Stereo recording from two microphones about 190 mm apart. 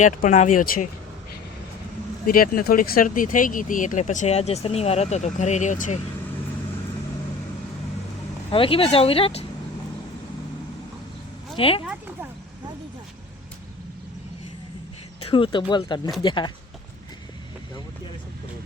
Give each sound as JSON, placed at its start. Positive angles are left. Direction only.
{"t": 0.0, "sound": "speech", "side_deg": 40}
{"t": 2.2, "sound": "speech", "side_deg": 50}
{"t": 8.4, "sound": "speech", "side_deg": 30}
{"t": 11.5, "sound": "speech", "side_deg": 30}
{"t": 15.2, "sound": "speech", "side_deg": 25}